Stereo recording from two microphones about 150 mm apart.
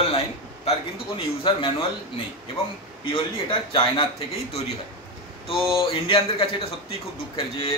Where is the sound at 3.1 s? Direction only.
35° left (ahead or behind).